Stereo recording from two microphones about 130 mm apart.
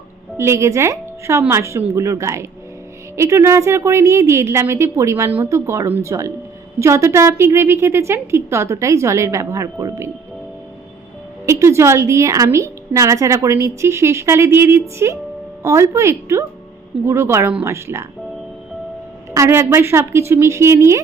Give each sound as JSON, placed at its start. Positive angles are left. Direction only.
{"t": 0.3, "sound": "a woman's voice", "side_deg": -20}
{"t": 11.4, "sound": "a woman's voice", "side_deg": -20}
{"t": 19.3, "sound": "a woman's voice", "side_deg": -20}